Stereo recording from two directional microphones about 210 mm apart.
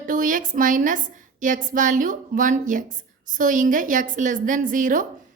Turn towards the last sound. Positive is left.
turn(degrees=-40)  # may be behind; listen again after turning